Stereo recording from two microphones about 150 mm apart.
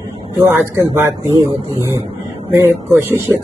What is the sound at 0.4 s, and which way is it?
A man's voice, 15° right (ahead or behind).